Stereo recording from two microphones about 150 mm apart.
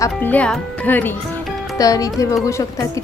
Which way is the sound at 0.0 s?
10° left (ahead or behind).